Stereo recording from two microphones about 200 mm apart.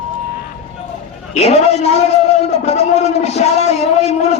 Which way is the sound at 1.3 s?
30° left (ahead or behind).